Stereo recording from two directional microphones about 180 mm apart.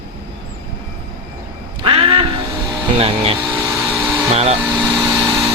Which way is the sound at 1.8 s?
30° right (ahead or behind).